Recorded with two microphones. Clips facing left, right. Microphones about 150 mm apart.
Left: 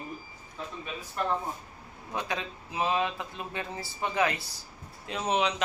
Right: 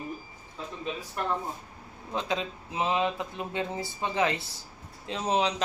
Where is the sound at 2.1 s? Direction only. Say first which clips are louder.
Right 3 dB; 20° right (ahead or behind).